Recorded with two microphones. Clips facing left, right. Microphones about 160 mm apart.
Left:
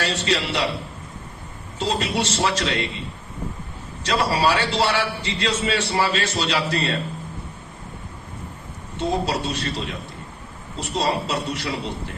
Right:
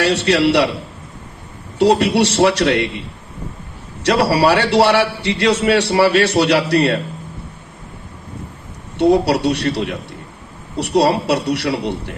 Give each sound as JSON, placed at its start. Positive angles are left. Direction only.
{"t": 0.0, "sound": "a man's voice", "side_deg": -70}
{"t": 1.8, "sound": "a man's voice", "side_deg": -70}
{"t": 4.0, "sound": "a man's voice", "side_deg": -70}
{"t": 9.0, "sound": "a man's voice", "side_deg": -70}